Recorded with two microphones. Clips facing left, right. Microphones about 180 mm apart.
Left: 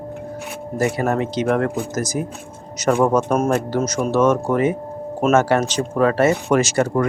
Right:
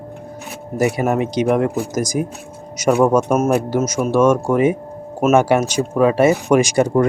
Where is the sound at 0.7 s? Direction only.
15° right (ahead or behind).